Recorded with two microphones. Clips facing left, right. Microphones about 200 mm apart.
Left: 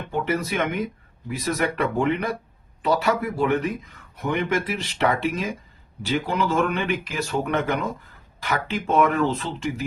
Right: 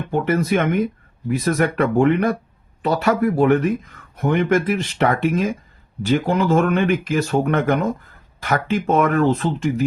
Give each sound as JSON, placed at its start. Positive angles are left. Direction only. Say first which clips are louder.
{"t": 0.1, "sound": "speech", "louder": "right 6 dB", "side_deg": -50}